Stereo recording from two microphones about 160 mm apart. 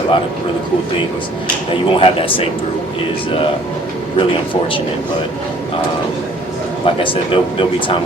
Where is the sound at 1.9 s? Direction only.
35° left (ahead or behind).